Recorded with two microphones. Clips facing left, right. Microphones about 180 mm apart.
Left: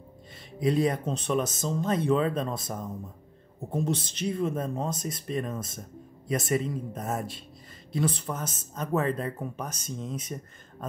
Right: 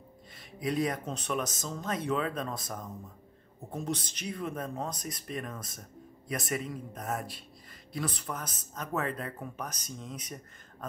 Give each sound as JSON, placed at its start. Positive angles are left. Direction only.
{"t": 0.6, "sound": "speech", "side_deg": 25}